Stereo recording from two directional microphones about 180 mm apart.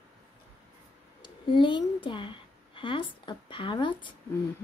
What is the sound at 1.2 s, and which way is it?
A woman's voice, 25° left (ahead or behind).